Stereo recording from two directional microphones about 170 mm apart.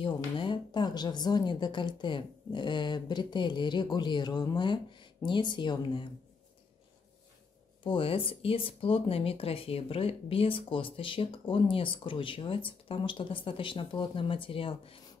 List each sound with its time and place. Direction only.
0.0 s speech: 30° left (ahead or behind)
7.8 s speech: 30° left (ahead or behind)